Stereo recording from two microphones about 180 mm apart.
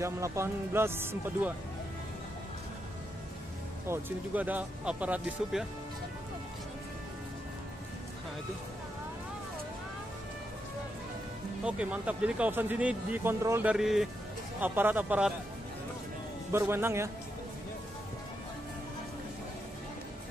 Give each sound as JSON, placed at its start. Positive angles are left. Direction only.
{"t": 0.0, "sound": "speech", "side_deg": -15}
{"t": 3.8, "sound": "speech", "side_deg": -10}
{"t": 11.6, "sound": "speech", "side_deg": -5}
{"t": 16.5, "sound": "speech", "side_deg": -15}